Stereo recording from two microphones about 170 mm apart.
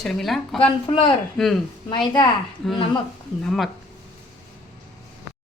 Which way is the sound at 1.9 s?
25° left (ahead or behind).